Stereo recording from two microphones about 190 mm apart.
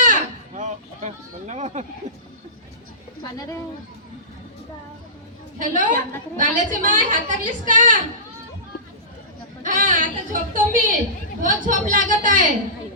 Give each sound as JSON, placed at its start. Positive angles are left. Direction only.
{"t": 0.0, "sound": "a sound", "side_deg": -40}
{"t": 5.5, "sound": "a woman's voice", "side_deg": -40}
{"t": 9.6, "sound": "a woman's voice", "side_deg": -45}